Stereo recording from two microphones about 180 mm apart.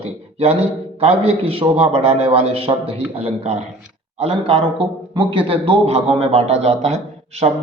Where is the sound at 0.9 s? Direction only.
35° right (ahead or behind).